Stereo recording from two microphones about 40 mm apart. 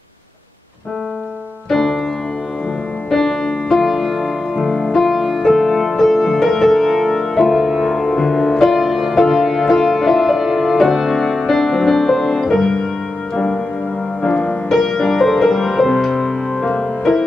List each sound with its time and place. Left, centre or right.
1.7 s piano: centre
3.1 s music: centre
14.2 s music: left
14.8 s music: centre